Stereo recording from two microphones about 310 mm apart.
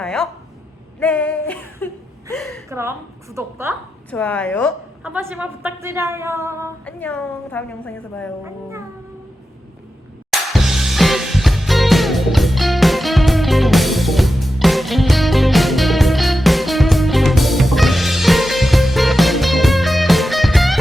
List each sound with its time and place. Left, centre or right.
0.0 s a woman's voice: centre
4.1 s a woman's voice: centre
6.8 s a woman's voice: centre
10.5 s music: centre